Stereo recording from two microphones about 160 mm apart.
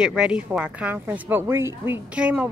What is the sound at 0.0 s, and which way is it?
Speech, 5° right (ahead or behind).